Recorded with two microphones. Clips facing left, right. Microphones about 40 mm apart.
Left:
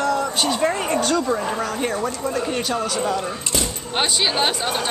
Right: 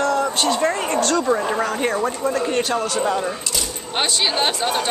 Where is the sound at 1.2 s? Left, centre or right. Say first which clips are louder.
Right 3 dB; centre.